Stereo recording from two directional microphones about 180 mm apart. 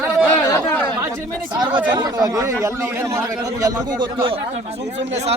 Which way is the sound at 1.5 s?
25° right (ahead or behind).